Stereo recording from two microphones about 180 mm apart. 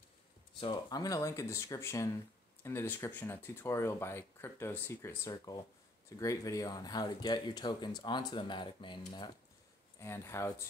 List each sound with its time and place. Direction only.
0.6 s speech: 25° left (ahead or behind)
9.9 s speech: 15° left (ahead or behind)